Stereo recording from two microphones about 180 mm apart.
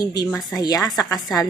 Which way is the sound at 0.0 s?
20° left (ahead or behind).